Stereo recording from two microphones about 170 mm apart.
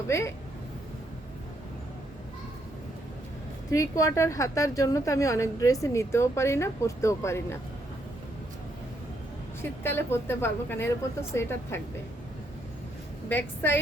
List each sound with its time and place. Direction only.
0.1 s a woman's voice: 15° left (ahead or behind)
3.7 s a woman's voice: 20° left (ahead or behind)
9.6 s a woman's voice: 15° left (ahead or behind)
13.2 s a woman's voice: 10° left (ahead or behind)